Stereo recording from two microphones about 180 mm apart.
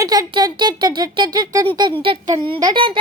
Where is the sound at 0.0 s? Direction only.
20° right (ahead or behind).